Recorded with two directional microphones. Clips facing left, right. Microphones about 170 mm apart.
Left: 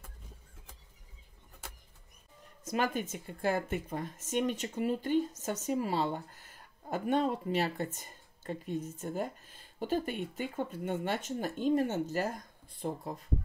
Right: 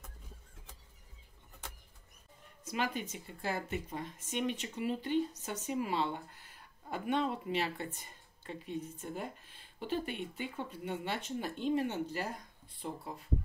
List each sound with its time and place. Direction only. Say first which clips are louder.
2.6 s speech: left 4 dB; 45° left (ahead or behind)